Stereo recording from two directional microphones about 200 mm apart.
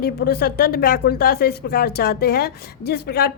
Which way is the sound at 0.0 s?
50° left (ahead or behind).